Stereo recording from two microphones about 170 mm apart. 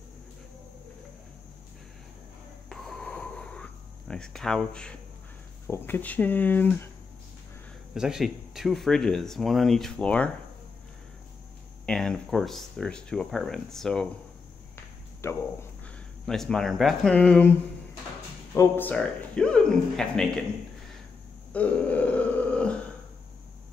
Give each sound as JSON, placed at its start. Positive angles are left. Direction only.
{"t": 2.7, "sound": "a sound", "side_deg": 0}
{"t": 5.7, "sound": "speech", "side_deg": 10}
{"t": 7.9, "sound": "speech", "side_deg": -5}
{"t": 11.8, "sound": "speech", "side_deg": 5}
{"t": 15.2, "sound": "speech", "side_deg": 15}
{"t": 16.3, "sound": "speech", "side_deg": 5}
{"t": 18.5, "sound": "speech", "side_deg": 15}
{"t": 21.5, "sound": "burping", "side_deg": 10}